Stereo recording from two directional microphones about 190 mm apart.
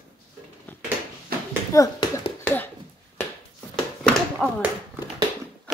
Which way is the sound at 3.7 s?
5° left (ahead or behind).